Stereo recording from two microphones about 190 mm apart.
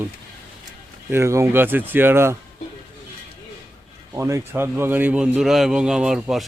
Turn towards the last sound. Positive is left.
turn(degrees=0)  # may be behind; listen again after turning